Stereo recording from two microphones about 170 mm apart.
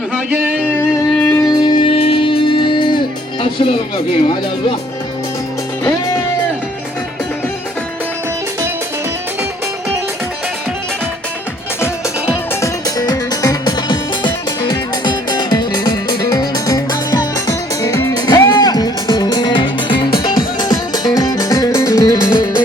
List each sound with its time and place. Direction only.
0.1 s a sound: 10° right (ahead or behind)
0.7 s music: 15° left (ahead or behind)
3.4 s speech: 30° left (ahead or behind)
12.6 s music: 20° left (ahead or behind)